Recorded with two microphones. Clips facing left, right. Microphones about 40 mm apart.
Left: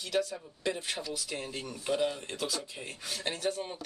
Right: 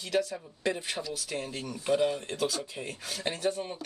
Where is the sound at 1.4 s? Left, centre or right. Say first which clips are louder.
Right 2 dB; centre.